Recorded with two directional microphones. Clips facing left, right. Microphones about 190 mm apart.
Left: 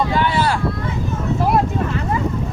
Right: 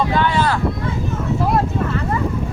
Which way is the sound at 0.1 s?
10° left (ahead or behind).